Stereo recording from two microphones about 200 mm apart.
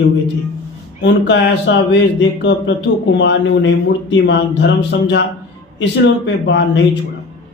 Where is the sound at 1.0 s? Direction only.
60° left (ahead or behind).